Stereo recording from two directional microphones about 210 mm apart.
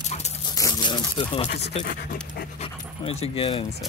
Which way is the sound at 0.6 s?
20° left (ahead or behind).